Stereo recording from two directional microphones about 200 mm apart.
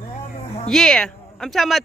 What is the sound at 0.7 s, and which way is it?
Speech, 5° left (ahead or behind).